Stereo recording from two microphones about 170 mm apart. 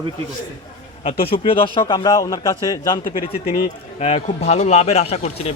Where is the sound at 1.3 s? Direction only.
30° left (ahead or behind).